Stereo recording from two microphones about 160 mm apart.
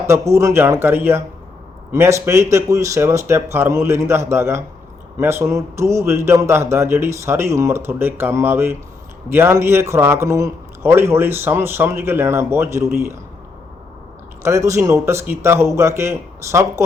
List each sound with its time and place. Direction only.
0.1 s a man's voice: 15° right (ahead or behind)
14.4 s a man's voice: 20° right (ahead or behind)